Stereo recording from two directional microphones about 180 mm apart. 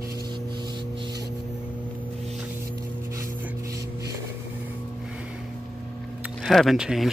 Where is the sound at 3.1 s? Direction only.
15° right (ahead or behind).